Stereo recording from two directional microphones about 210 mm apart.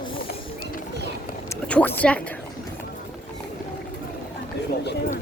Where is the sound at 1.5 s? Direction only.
5° left (ahead or behind).